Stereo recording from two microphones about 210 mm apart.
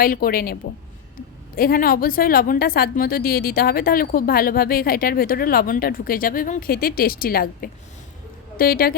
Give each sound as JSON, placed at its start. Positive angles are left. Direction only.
{"t": 0.0, "sound": "a woman's voice", "side_deg": 45}